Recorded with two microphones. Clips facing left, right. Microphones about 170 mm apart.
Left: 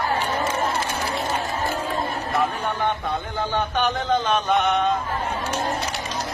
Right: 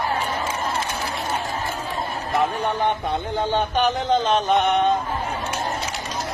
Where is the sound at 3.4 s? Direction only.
20° right (ahead or behind).